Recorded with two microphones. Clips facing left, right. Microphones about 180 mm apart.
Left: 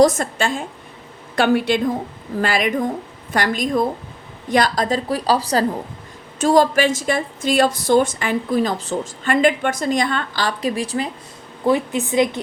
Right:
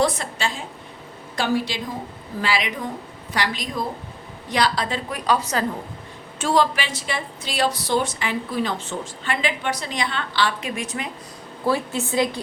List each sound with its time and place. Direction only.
0.0 s a woman's voice: 45° left (ahead or behind)
2.4 s a woman's voice: 50° left (ahead or behind); by 11.1 s 35° left (ahead or behind)
11.6 s a woman's voice: 20° left (ahead or behind)